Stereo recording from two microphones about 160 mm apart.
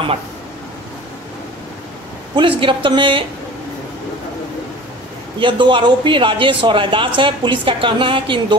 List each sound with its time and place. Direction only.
2.3 s speech: 30° right (ahead or behind)
5.4 s speech: 30° right (ahead or behind)